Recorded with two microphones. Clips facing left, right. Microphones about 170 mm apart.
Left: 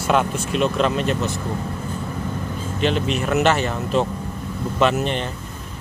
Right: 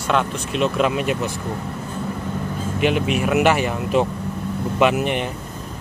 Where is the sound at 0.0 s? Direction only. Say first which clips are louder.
Left 1 dB; 5° left (ahead or behind); by 1.3 s 10° right (ahead or behind).